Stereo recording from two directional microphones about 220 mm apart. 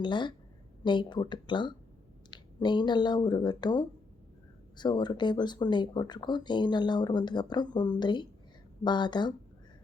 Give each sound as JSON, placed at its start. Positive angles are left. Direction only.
{"t": 0.0, "sound": "speech", "side_deg": 20}